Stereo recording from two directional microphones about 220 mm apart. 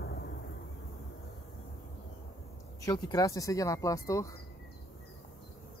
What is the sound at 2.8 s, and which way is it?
Speech, 15° left (ahead or behind).